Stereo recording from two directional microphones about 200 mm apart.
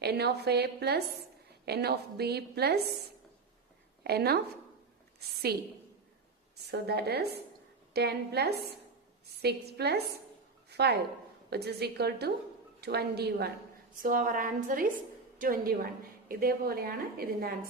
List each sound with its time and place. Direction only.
0.0 s a woman's voice: 55° right (ahead or behind)
4.0 s a woman's voice: 50° right (ahead or behind)
5.5 s a woman's voice: 50° right (ahead or behind)
6.7 s a woman's voice: 55° right (ahead or behind)